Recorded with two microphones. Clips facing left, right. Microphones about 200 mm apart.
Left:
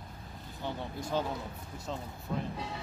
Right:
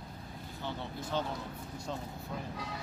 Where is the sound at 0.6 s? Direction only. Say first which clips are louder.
Left 3 dB; 15° left (ahead or behind).